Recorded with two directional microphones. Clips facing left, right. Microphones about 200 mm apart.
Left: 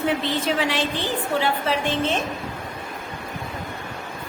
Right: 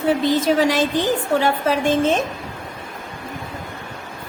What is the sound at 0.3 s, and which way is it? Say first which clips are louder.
A woman's voice: right 7 dB; 40° right (ahead or behind).